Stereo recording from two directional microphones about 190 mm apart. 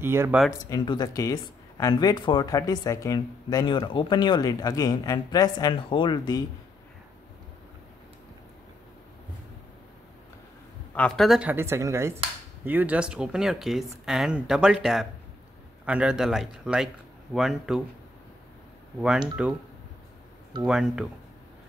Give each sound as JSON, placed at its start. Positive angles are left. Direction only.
{"t": 0.0, "sound": "speech", "side_deg": -10}
{"t": 0.5, "sound": "speech", "side_deg": 20}
{"t": 11.0, "sound": "speech", "side_deg": 0}
{"t": 18.9, "sound": "speech", "side_deg": -5}
{"t": 20.6, "sound": "speech", "side_deg": -5}